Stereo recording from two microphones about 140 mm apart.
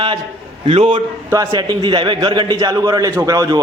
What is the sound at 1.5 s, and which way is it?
A man's voice, 30° right (ahead or behind).